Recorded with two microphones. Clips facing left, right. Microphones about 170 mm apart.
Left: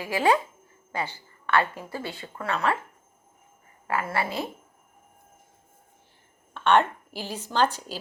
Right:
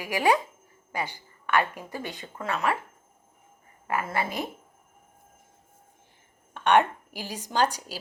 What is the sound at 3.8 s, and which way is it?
Speech, 20° right (ahead or behind).